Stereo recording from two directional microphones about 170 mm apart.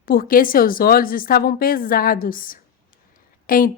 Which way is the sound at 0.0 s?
55° left (ahead or behind).